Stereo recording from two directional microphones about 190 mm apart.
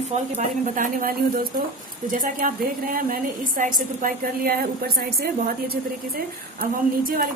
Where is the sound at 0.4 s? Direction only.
45° right (ahead or behind).